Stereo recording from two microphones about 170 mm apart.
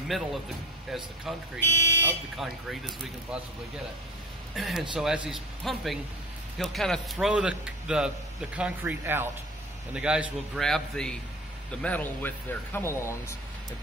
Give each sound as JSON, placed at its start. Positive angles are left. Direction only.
{"t": 0.1, "sound": "speech", "side_deg": 0}
{"t": 1.7, "sound": "speech", "side_deg": 15}
{"t": 2.3, "sound": "speech", "side_deg": -5}
{"t": 4.6, "sound": "speech", "side_deg": 0}